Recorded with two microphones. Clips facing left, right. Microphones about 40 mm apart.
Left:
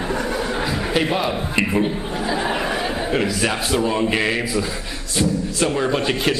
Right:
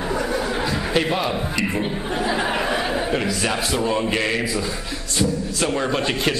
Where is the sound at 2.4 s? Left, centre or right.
Centre.